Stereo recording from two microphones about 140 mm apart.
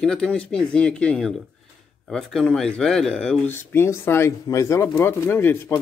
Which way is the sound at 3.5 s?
15° left (ahead or behind).